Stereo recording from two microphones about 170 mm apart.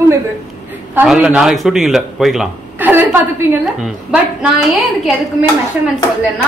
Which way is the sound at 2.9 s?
10° right (ahead or behind).